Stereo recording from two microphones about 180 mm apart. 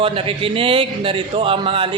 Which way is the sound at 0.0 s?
30° right (ahead or behind).